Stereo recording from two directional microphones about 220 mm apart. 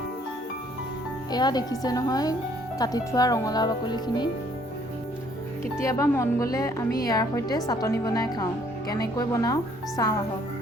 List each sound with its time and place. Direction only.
1.3 s speech: 20° left (ahead or behind)
5.8 s speech: 15° left (ahead or behind)